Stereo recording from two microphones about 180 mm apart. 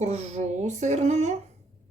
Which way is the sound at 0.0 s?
40° right (ahead or behind).